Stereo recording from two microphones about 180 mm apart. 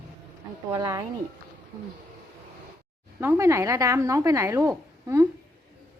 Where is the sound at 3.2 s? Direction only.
15° right (ahead or behind).